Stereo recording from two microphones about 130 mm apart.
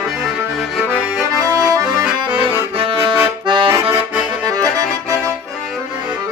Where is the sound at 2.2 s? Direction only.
40° right (ahead or behind).